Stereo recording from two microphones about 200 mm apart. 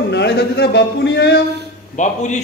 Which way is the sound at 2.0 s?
35° left (ahead or behind).